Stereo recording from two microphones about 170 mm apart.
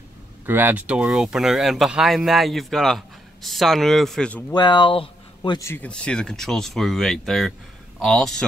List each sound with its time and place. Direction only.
0.5 s speech: 10° right (ahead or behind); by 4.5 s 5° left (ahead or behind)
4.5 s speech: 25° left (ahead or behind)
5.7 s speech: 10° left (ahead or behind)